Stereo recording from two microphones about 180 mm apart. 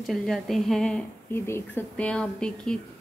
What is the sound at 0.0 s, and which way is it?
A woman's voice, centre (ahead or behind).